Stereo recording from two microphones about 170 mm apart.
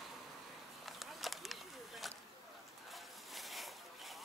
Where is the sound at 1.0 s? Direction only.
Centre (ahead or behind).